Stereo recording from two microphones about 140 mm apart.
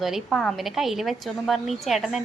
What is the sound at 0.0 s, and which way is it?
A woman's voice, centre (ahead or behind).